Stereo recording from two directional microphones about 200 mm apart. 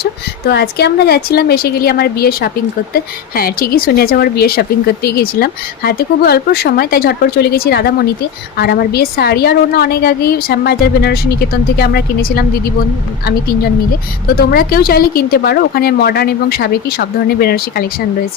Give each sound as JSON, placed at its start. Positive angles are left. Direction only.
{"t": 0.0, "sound": "a woman's voice", "side_deg": 55}
{"t": 14.3, "sound": "a woman's voice", "side_deg": 45}